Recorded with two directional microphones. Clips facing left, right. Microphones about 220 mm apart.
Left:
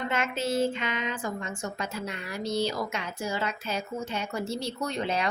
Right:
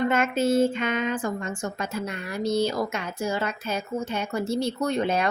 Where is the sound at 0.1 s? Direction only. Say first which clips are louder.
Right 7 dB; 50° right (ahead or behind).